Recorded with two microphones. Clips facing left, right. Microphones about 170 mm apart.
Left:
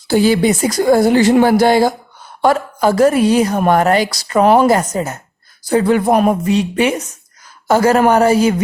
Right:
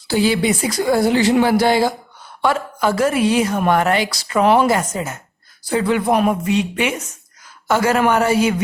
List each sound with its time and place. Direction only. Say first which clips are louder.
0.1 s a woman's voice: left 4 dB; 45° left (ahead or behind)